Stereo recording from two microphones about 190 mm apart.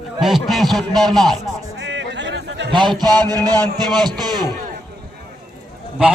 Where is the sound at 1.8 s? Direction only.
70° right (ahead or behind).